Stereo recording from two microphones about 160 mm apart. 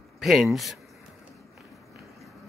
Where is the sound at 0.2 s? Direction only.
Centre (ahead or behind).